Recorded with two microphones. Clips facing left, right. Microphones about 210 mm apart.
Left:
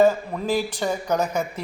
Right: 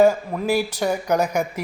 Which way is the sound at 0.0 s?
10° right (ahead or behind).